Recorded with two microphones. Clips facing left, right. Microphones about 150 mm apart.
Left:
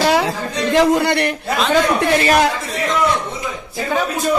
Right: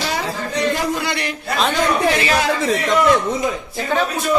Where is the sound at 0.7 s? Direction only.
65° left (ahead or behind).